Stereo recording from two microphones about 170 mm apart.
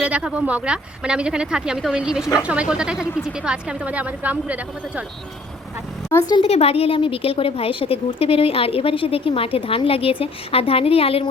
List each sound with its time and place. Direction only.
0.0 s speech: 5° right (ahead or behind)
6.1 s a woman's voice: 15° left (ahead or behind)
6.3 s a woman's voice: 35° left (ahead or behind)